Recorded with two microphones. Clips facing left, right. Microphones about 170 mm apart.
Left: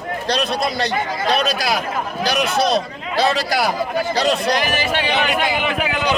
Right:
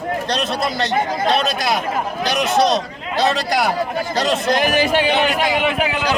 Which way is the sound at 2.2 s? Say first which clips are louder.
Right 2 dB; 20° right (ahead or behind).